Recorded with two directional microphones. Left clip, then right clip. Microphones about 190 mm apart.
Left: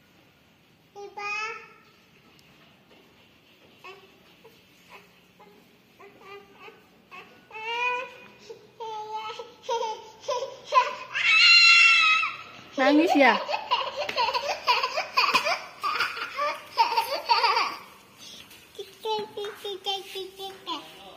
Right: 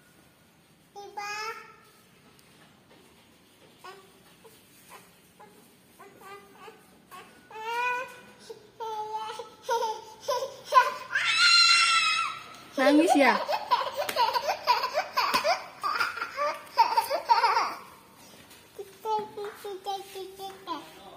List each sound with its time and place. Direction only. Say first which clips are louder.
0.9 s child singing: left 3 dB; 20° right (ahead or behind)
7.2 s baby cry: left 2 dB; 15° right (ahead or behind)
8.7 s a sound: right 1 dB; 15° right (ahead or behind)
12.7 s a child's voice: left 1 dB; 10° right (ahead or behind)
13.5 s laughter: even; 15° right (ahead or behind)
14.5 s a sound: left 1 dB; 10° right (ahead or behind)
15.8 s laughter: left 1 dB; 10° right (ahead or behind)
19.3 s child singing: left 3 dB; 10° right (ahead or behind)